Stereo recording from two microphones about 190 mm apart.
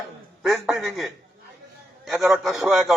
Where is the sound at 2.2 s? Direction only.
Centre (ahead or behind).